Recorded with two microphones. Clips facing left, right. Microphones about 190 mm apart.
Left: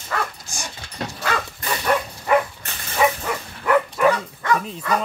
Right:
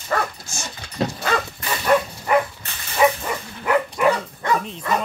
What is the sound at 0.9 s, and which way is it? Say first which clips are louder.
Dog: right 4 dB; 30° right (ahead or behind).